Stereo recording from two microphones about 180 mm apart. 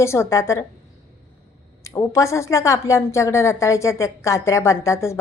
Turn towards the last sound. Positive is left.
turn(degrees=15)  # may be behind; listen again after turning